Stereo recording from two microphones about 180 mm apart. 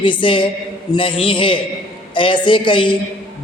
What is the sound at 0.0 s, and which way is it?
Speech, 25° left (ahead or behind).